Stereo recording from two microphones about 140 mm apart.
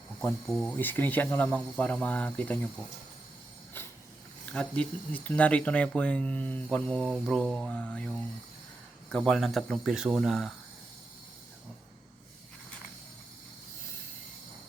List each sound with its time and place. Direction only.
0.4 s speech: centre (ahead or behind)
0.8 s speech: 15° left (ahead or behind)
3.8 s mechanisms: 15° left (ahead or behind)
4.5 s speech: 10° left (ahead or behind)